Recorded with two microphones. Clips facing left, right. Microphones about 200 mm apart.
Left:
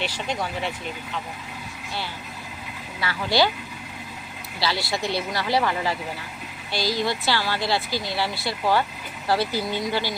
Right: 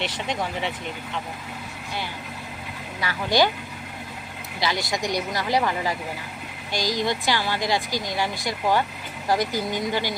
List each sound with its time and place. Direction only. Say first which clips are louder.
3.0 s speech: right 1 dB; 15° right (ahead or behind)
4.6 s speech: even; 15° right (ahead or behind)